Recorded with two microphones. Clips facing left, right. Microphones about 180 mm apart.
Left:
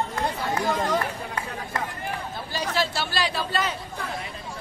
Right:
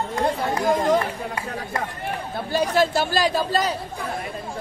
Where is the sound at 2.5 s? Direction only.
55° right (ahead or behind).